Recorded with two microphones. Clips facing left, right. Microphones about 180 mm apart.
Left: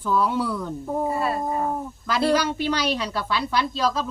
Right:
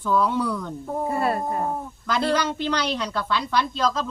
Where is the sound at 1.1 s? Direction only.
55° right (ahead or behind).